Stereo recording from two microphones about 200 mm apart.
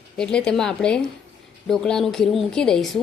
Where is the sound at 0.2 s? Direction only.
5° left (ahead or behind).